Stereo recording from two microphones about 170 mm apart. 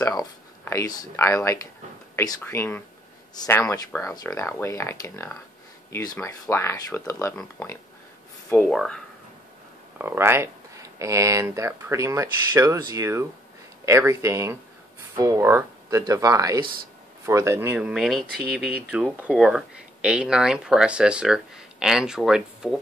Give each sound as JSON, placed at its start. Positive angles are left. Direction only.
{"t": 0.0, "sound": "speech", "side_deg": 20}
{"t": 8.6, "sound": "speech", "side_deg": 5}
{"t": 9.9, "sound": "speech", "side_deg": -15}